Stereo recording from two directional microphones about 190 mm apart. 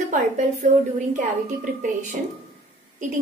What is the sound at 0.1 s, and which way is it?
A woman's voice, 40° right (ahead or behind).